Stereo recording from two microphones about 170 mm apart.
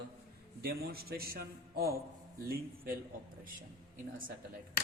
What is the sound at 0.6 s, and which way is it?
A man's voice, 65° right (ahead or behind).